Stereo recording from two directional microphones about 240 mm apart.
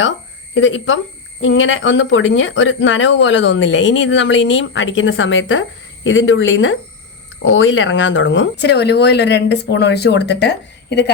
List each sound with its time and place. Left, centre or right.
0.5 s a woman's voice: left